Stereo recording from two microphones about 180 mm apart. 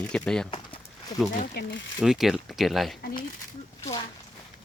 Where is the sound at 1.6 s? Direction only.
60° left (ahead or behind).